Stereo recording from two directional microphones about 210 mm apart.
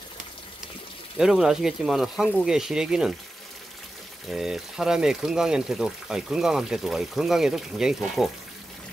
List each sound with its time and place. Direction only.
1.1 s speech: 5° right (ahead or behind)
4.3 s speech: centre (ahead or behind)